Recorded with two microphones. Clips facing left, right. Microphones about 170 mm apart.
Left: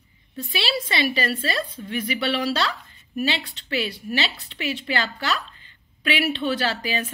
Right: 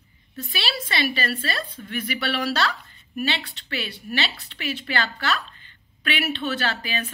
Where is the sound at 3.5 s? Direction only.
35° left (ahead or behind).